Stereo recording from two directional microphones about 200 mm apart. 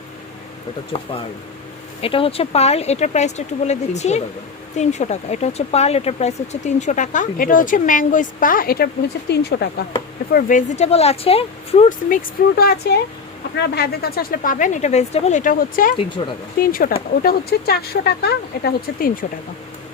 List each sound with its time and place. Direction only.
2.0 s speech: 25° left (ahead or behind); by 9.6 s 55° left (ahead or behind)
10.3 s speech: 40° left (ahead or behind)
16.2 s speech: 25° left (ahead or behind)
16.6 s speech: 45° left (ahead or behind)